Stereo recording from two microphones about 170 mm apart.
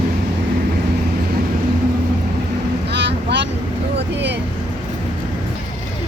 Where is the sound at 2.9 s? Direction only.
90° right.